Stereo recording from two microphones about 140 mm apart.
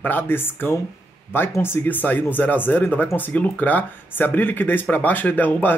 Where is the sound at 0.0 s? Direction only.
15° left (ahead or behind).